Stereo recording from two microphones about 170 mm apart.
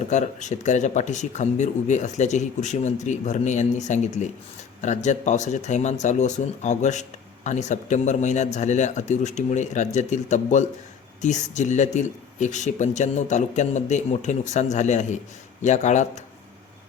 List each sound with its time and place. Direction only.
0.1 s speech: 45° left (ahead or behind)